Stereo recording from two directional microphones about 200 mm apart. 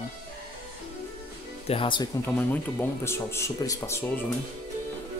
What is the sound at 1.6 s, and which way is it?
Speech, 25° left (ahead or behind).